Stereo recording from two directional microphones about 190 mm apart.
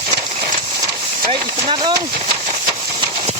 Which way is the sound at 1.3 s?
25° right (ahead or behind).